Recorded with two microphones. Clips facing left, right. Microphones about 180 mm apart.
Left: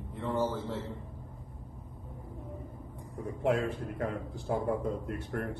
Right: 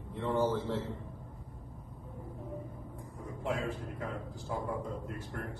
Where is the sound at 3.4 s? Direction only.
65° left (ahead or behind).